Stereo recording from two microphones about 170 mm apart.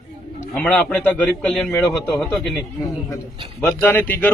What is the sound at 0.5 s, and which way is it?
A man's voice, 5° left (ahead or behind).